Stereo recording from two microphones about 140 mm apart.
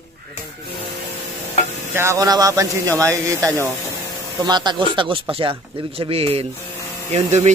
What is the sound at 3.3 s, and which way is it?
Speech, 10° left (ahead or behind).